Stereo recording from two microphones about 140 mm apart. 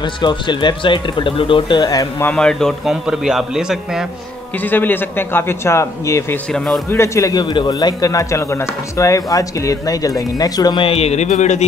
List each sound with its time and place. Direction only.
0.0 s speech: 35° left (ahead or behind)
2.2 s a man's voice: 5° left (ahead or behind)
4.6 s a man's voice: 15° left (ahead or behind)
6.5 s a man's voice: 5° left (ahead or behind)
6.9 s a man's voice: 20° left (ahead or behind); by 11.6 s 55° left (ahead or behind)